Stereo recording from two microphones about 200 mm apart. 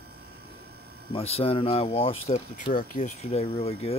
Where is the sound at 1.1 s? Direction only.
30° left (ahead or behind).